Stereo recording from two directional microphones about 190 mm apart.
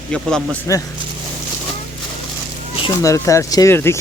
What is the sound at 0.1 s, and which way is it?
Speech, 5° left (ahead or behind).